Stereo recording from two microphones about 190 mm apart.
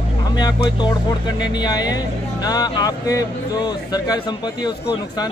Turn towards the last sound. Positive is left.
turn(degrees=20)  # may be behind; listen again after turning